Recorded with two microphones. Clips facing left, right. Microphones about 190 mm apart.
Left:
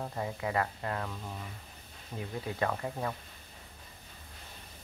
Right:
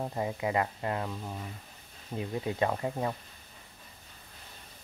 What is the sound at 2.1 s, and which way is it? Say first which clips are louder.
Speech: right 4 dB; 20° right (ahead or behind).